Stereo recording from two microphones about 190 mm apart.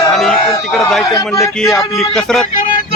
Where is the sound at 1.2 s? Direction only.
15° left (ahead or behind).